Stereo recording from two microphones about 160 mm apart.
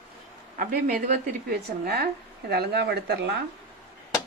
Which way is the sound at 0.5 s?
65° right (ahead or behind).